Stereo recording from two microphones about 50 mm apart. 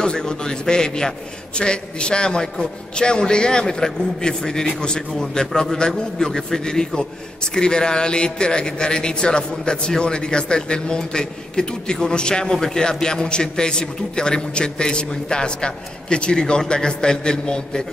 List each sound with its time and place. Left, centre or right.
0.0 s a man's voice: centre